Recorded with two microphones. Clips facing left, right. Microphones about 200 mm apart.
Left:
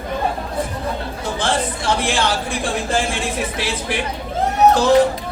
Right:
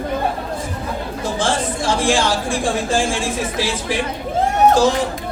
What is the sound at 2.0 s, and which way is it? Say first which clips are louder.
Speech: right 3 dB; 60° left (ahead or behind).